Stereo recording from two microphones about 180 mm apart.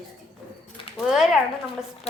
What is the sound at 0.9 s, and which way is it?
Speech, centre (ahead or behind).